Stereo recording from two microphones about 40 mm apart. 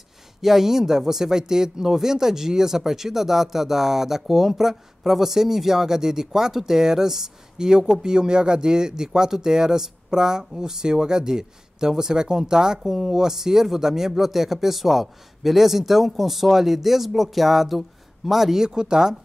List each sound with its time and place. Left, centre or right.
0.4 s speech: centre
18.7 s speech: centre